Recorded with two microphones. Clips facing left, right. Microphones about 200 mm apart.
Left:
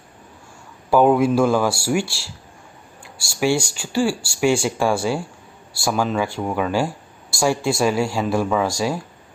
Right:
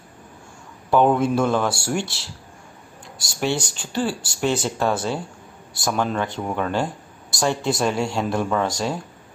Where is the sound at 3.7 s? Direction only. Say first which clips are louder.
Left 4 dB; 10° left (ahead or behind).